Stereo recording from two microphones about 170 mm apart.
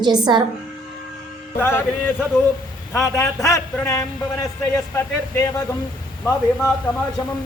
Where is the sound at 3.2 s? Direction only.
20° left (ahead or behind).